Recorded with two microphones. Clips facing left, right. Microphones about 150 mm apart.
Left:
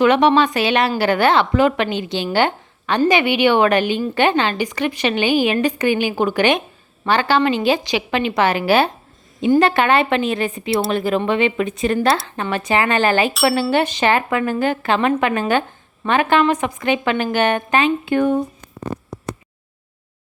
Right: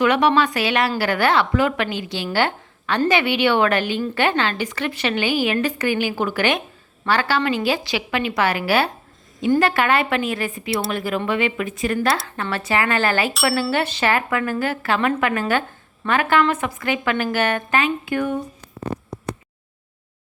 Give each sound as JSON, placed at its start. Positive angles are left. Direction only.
{"t": 0.0, "sound": "a woman's voice", "side_deg": 25}